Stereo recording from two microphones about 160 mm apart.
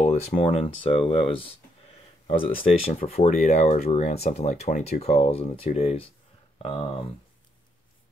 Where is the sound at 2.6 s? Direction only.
40° left (ahead or behind).